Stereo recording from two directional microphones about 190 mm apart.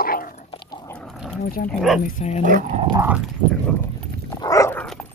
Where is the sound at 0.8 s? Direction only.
5° left (ahead or behind).